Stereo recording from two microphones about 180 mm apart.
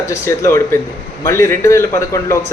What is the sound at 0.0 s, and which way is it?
Speech, 15° left (ahead or behind).